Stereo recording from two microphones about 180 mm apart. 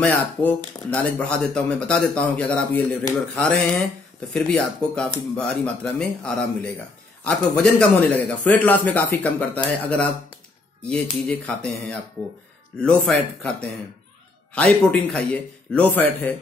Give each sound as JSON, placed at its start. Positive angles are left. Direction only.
{"t": 0.0, "sound": "a man's voice", "side_deg": 10}